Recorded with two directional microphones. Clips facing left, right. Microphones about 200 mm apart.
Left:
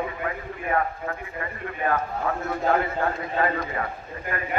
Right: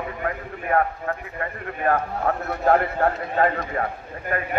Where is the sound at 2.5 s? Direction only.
60° right (ahead or behind).